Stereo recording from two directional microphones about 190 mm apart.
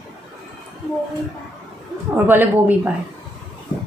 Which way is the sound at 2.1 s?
10° right (ahead or behind).